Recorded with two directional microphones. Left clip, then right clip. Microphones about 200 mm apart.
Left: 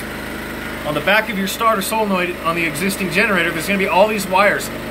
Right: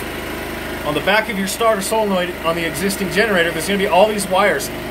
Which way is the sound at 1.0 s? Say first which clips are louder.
Left 1 dB; 10° right (ahead or behind).